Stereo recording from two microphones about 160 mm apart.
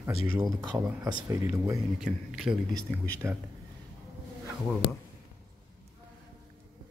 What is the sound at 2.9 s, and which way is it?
Speech, 5° left (ahead or behind).